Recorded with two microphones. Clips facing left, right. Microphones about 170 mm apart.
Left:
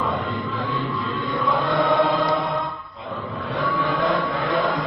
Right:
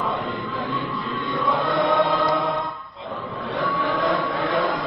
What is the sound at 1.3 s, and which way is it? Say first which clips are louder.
Chant: even; centre (ahead or behind).